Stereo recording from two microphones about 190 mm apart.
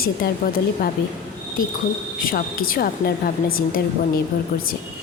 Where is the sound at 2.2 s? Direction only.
50° left (ahead or behind).